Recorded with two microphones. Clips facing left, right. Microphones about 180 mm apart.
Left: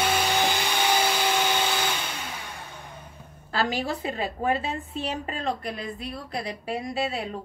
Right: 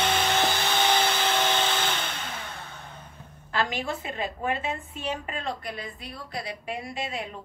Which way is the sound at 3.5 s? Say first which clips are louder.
Left 2 dB; 35° left (ahead or behind).